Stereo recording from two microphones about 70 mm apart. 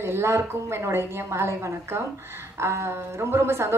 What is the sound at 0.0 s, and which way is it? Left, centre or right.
Speech, right.